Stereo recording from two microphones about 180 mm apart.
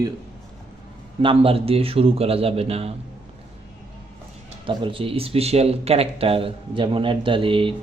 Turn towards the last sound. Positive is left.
turn(degrees=-30)  # may be behind; listen again after turning